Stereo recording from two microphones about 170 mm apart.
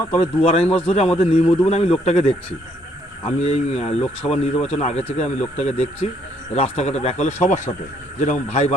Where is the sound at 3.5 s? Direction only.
35° left (ahead or behind).